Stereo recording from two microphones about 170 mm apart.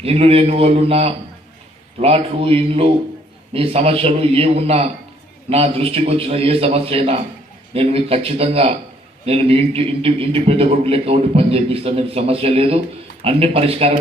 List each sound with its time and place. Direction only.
0.0 s a man's voice: 35° right (ahead or behind)